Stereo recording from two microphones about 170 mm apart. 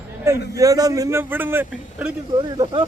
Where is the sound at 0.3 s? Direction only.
20° right (ahead or behind).